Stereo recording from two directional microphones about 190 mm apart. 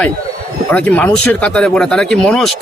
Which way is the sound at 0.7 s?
10° left (ahead or behind).